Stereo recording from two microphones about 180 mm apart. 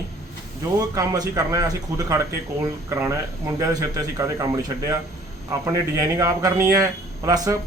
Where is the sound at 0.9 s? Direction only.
20° right (ahead or behind).